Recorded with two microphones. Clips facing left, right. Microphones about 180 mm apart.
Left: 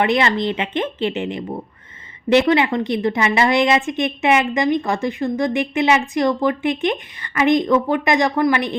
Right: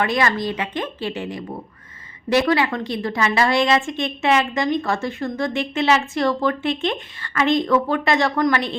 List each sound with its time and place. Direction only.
0.0 s a woman's voice: 20° left (ahead or behind)